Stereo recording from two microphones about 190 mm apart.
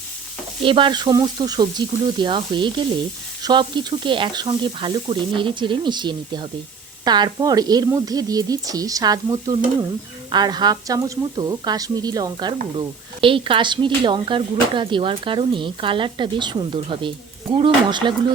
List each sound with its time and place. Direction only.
0.6 s speech: 25° right (ahead or behind)